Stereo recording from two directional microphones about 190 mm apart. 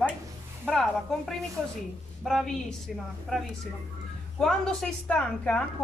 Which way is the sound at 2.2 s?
Centre (ahead or behind).